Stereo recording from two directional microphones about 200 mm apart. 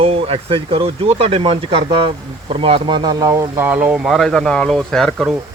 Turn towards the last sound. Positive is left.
turn(degrees=0)  # may be behind; listen again after turning